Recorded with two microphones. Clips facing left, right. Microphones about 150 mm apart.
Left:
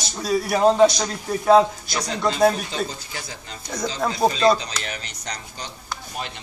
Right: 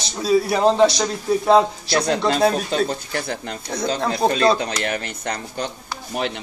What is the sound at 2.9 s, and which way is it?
Speech, 60° right (ahead or behind).